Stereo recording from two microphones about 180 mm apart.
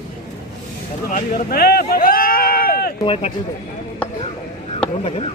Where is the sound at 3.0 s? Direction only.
35° left (ahead or behind).